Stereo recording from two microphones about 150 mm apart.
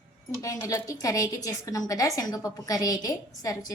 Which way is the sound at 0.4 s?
20° left (ahead or behind).